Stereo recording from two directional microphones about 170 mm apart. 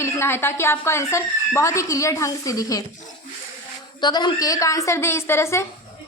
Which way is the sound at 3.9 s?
25° left (ahead or behind).